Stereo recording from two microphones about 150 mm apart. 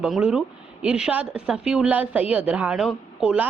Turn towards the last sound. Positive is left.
turn(degrees=-5)  # may be behind; listen again after turning